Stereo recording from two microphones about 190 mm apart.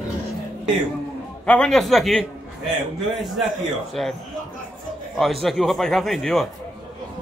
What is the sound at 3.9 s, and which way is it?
Speech, centre (ahead or behind).